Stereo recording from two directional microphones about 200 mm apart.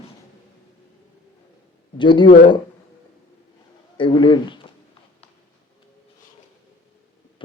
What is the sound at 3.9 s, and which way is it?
Speech, 25° left (ahead or behind).